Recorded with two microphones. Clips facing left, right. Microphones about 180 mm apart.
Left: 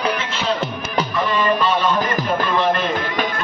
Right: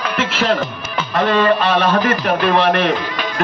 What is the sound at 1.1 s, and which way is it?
A man's voice, 80° right.